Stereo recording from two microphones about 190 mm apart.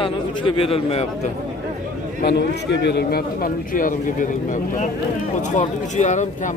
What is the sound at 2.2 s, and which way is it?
A man's voice, 60° left (ahead or behind).